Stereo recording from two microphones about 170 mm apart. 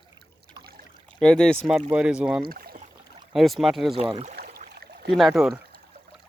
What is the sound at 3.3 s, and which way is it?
Speech, centre (ahead or behind).